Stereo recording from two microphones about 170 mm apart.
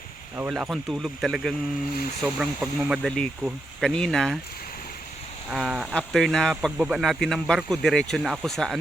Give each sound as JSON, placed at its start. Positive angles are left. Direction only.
{"t": 0.5, "sound": "speech", "side_deg": 0}
{"t": 5.5, "sound": "speech", "side_deg": -5}